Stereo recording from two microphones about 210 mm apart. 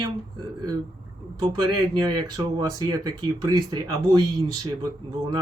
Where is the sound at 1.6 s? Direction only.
20° right (ahead or behind).